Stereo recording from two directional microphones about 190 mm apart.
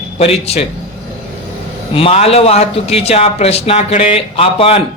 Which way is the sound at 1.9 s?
30° left (ahead or behind).